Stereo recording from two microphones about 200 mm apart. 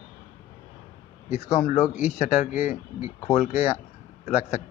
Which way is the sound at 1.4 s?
15° left (ahead or behind).